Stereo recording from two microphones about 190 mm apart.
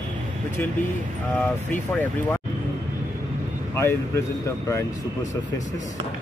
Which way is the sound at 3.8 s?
15° left (ahead or behind).